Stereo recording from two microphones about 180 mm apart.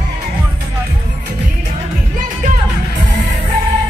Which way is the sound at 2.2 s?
45° right (ahead or behind).